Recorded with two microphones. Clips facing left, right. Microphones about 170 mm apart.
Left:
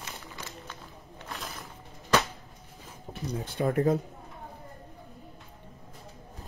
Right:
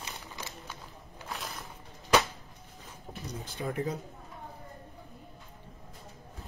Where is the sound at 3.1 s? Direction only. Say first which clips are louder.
Left 6 dB; 60° left (ahead or behind).